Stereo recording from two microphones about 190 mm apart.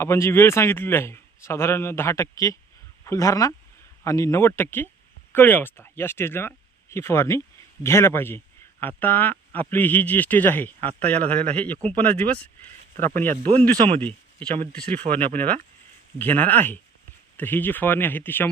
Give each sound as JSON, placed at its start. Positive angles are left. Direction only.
{"t": 0.0, "sound": "speech", "side_deg": 15}
{"t": 13.3, "sound": "speech", "side_deg": -35}
{"t": 14.0, "sound": "a sound", "side_deg": 10}
{"t": 14.7, "sound": "speech", "side_deg": 5}
{"t": 15.0, "sound": "speech", "side_deg": -35}
{"t": 16.1, "sound": "speech", "side_deg": 10}